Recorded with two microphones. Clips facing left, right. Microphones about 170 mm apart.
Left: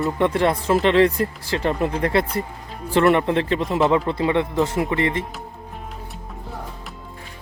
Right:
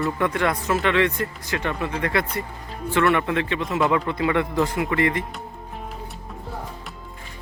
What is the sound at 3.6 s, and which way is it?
Speech, centre (ahead or behind).